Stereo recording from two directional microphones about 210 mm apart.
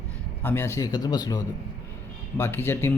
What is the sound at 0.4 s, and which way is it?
Speech, 10° left (ahead or behind).